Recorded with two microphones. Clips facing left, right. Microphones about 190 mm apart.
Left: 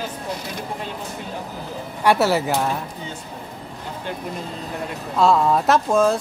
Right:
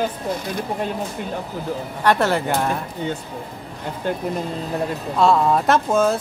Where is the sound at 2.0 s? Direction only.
10° left (ahead or behind).